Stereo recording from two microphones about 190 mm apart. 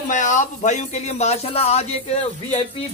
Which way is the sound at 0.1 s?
40° left (ahead or behind).